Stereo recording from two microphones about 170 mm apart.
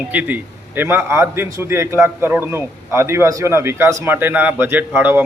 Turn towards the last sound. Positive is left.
turn(degrees=-10)  # may be behind; listen again after turning